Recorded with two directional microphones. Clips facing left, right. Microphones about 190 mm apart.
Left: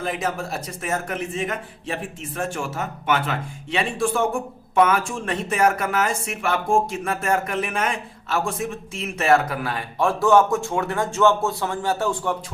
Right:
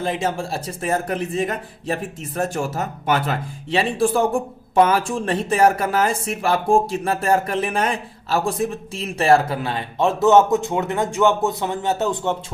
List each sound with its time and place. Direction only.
0.0 s speech: 30° right (ahead or behind)